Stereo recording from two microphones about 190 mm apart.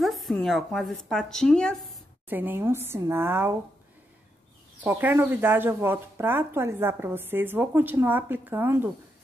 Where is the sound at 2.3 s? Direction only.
10° right (ahead or behind).